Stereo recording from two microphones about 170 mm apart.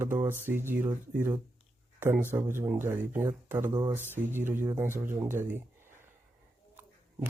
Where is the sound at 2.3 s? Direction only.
15° right (ahead or behind).